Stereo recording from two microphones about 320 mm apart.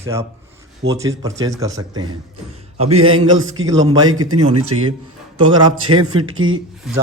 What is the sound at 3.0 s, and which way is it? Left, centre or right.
Speech, right.